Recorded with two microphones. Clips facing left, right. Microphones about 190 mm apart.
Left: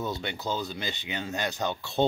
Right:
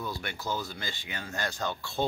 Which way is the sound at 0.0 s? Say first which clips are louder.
Left 4 dB; 20° left (ahead or behind).